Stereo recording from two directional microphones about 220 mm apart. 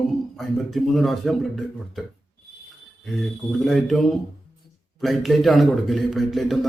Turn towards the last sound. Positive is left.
turn(degrees=0)  # may be behind; listen again after turning